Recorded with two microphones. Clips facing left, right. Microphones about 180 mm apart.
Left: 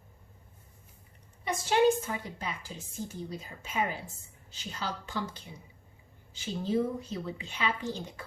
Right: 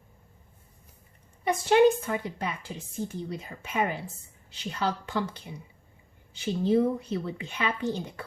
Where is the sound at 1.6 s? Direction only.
60° right (ahead or behind).